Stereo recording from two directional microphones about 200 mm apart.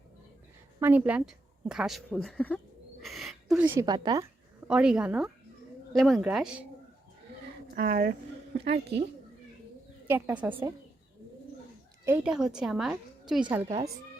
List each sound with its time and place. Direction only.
0.8 s a woman's voice: 10° right (ahead or behind); by 2.6 s 5° left (ahead or behind)
3.0 s bird: centre (ahead or behind)
3.6 s a woman's voice: 20° right (ahead or behind)
4.7 s a woman's voice: 5° right (ahead or behind)
7.8 s a woman's voice: 50° right (ahead or behind)
10.1 s speech: 10° right (ahead or behind)
12.0 s a woman's voice: 10° right (ahead or behind)